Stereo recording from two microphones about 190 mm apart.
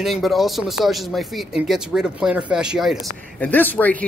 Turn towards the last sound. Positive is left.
turn(degrees=10)  # may be behind; listen again after turning